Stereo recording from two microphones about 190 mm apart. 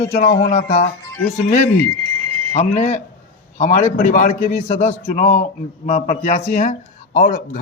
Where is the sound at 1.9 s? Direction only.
30° right (ahead or behind).